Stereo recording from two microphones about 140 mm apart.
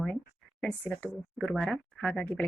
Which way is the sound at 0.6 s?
10° left (ahead or behind).